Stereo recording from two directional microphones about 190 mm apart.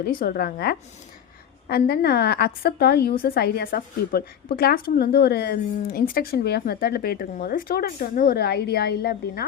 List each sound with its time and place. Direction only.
0.0 s a woman's voice: 50° left (ahead or behind)